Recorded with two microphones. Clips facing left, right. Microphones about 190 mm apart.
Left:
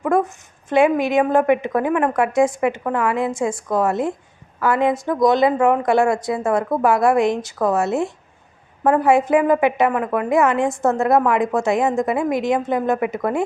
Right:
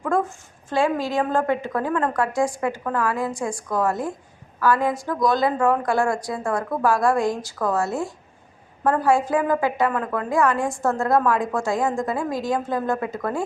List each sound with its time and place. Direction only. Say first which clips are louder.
0.0 s a woman's voice: left 4 dB; 20° left (ahead or behind)